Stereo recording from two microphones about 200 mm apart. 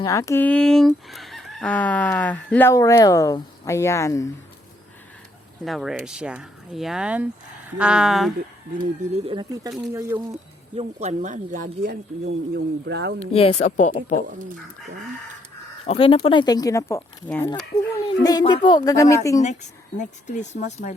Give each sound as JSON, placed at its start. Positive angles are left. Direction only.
{"t": 0.0, "sound": "speech", "side_deg": 15}
{"t": 5.6, "sound": "speech", "side_deg": 0}
{"t": 9.2, "sound": "speech", "side_deg": -25}
{"t": 10.8, "sound": "speech", "side_deg": -35}
{"t": 13.3, "sound": "speech", "side_deg": 30}
{"t": 15.9, "sound": "speech", "side_deg": 30}
{"t": 20.0, "sound": "speech", "side_deg": 35}